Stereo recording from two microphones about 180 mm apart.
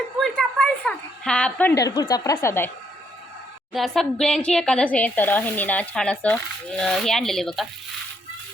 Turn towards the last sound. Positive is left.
turn(degrees=0)  # may be behind; listen again after turning